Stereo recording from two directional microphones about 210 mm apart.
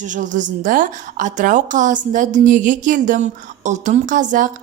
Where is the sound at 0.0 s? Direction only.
35° right (ahead or behind).